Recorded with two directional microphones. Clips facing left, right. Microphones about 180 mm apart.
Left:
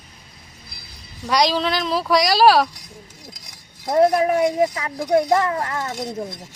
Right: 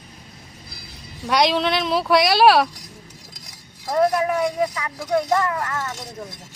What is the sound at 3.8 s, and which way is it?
Speech, 25° left (ahead or behind).